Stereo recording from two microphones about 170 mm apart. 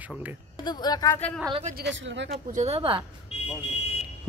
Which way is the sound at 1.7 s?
90° right.